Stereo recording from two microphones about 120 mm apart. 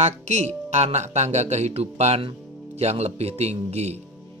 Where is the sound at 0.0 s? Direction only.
70° right (ahead or behind).